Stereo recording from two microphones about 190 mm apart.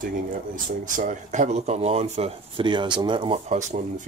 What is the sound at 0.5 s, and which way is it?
Speech, 45° right (ahead or behind).